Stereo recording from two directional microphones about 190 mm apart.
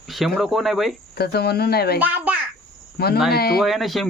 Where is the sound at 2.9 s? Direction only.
55° left (ahead or behind).